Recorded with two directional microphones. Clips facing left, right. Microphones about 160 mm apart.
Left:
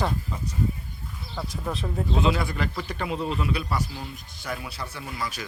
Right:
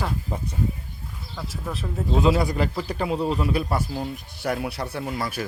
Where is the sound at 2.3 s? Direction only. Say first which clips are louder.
Right 5 dB; 35° right (ahead or behind).